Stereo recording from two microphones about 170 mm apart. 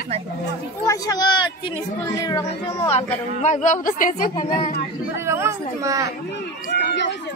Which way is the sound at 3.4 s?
45° left (ahead or behind).